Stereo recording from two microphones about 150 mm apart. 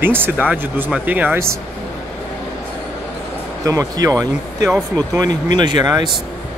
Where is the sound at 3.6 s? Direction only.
20° right (ahead or behind).